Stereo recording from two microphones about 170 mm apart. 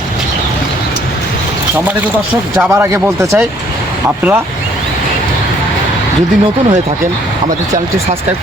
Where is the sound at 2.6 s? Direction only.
15° right (ahead or behind).